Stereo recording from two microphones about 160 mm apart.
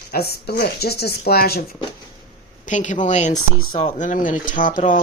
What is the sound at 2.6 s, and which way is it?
Speech, 50° left (ahead or behind).